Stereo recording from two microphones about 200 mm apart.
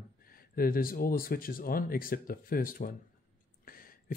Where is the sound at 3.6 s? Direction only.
45° left (ahead or behind).